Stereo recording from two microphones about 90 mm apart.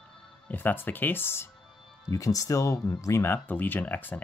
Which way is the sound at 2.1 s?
40° left (ahead or behind).